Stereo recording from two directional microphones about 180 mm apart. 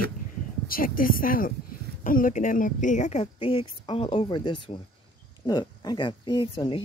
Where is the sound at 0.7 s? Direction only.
50° left (ahead or behind).